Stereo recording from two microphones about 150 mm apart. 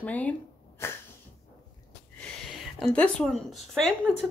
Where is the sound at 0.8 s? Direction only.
15° left (ahead or behind).